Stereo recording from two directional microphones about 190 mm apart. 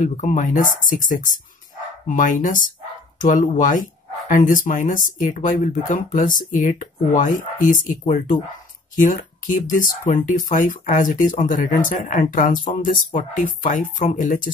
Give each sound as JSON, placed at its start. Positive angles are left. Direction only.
{"t": 0.0, "sound": "speech", "side_deg": 40}